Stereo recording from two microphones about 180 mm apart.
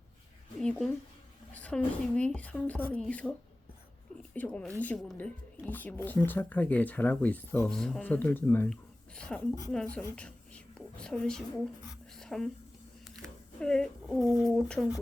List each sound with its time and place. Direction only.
0.6 s a sound: 5° left (ahead or behind)
1.5 s speech: 5° left (ahead or behind)
4.4 s speech: 5° left (ahead or behind)
10.2 s whispering: 5° left (ahead or behind)
12.1 s a sound: 5° left (ahead or behind)
13.6 s speech: 5° left (ahead or behind)